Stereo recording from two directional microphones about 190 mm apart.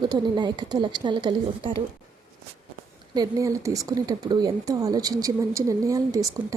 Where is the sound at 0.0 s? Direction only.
20° right (ahead or behind).